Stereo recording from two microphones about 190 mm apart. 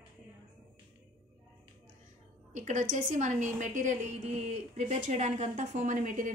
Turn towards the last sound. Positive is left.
turn(degrees=-40)  # may be behind; listen again after turning